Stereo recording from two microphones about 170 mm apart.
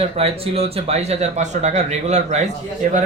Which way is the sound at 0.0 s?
35° right (ahead or behind).